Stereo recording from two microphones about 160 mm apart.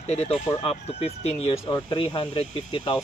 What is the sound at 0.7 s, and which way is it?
Speech, 40° left (ahead or behind).